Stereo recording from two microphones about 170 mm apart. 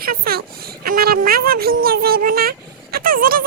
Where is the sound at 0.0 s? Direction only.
60° right (ahead or behind).